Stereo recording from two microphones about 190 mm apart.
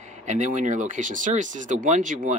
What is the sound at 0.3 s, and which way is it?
Speech, 40° right (ahead or behind).